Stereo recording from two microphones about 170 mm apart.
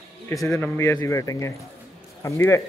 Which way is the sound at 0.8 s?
15° left (ahead or behind).